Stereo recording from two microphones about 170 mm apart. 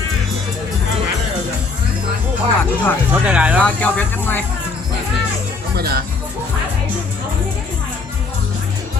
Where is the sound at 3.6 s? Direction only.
10° left (ahead or behind).